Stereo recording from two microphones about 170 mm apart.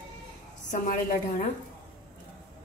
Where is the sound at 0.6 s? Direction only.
50° left (ahead or behind).